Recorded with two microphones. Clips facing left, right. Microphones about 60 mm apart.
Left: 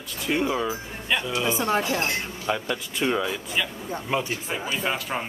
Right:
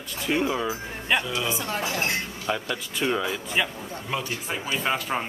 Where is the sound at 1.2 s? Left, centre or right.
Centre.